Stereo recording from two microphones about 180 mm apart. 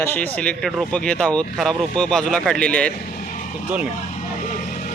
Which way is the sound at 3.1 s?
45° left (ahead or behind).